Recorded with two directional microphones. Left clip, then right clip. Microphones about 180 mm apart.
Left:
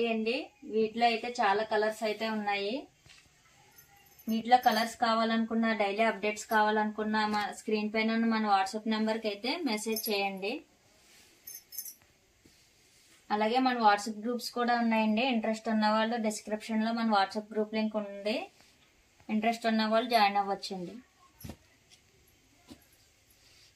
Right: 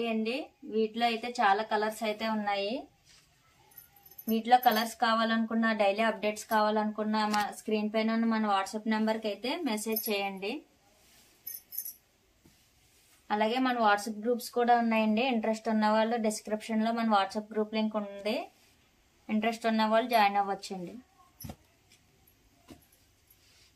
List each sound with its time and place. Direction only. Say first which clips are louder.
0.9 s a woman's voice: left 2 dB; 15° right (ahead or behind); by 2.2 s centre (ahead or behind)
4.3 s a woman's voice: right 1 dB; 5° right (ahead or behind); by 6.3 s 20° right (ahead or behind)
6.5 s speech: left 1 dB; 10° right (ahead or behind)
13.3 s speech: left 1 dB; 10° right (ahead or behind)